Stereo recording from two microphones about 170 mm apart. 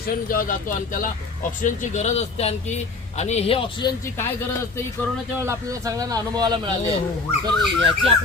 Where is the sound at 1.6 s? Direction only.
45° left (ahead or behind).